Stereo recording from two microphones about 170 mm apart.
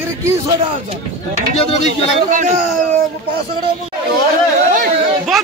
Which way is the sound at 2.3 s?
50° right (ahead or behind).